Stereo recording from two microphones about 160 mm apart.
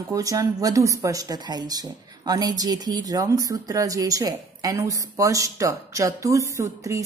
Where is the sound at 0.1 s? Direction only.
20° right (ahead or behind).